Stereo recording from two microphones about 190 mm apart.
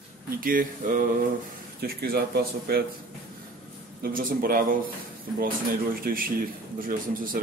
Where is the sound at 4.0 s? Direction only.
45° right (ahead or behind).